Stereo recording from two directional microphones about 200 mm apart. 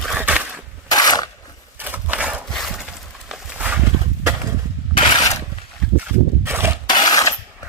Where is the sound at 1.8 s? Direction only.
10° right (ahead or behind).